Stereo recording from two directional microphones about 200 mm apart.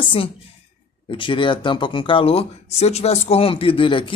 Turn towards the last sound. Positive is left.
turn(degrees=25)  # may be behind; listen again after turning